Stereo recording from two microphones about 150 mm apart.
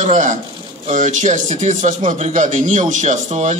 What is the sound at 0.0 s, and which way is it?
A man's voice, 55° right (ahead or behind).